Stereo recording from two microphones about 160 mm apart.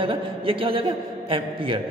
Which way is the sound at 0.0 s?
35° right (ahead or behind).